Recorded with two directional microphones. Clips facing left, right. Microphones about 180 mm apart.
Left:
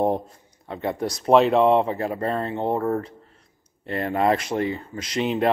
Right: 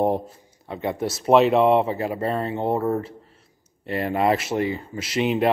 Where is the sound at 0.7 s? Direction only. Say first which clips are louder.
Even; 5° right (ahead or behind).